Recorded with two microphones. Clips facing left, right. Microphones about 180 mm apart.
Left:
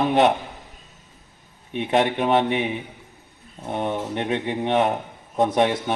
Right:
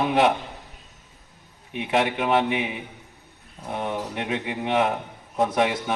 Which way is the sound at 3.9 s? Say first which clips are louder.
Left 3 dB; 30° left (ahead or behind).